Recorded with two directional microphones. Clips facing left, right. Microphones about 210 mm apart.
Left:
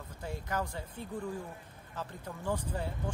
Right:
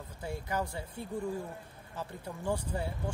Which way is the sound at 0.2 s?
10° right (ahead or behind).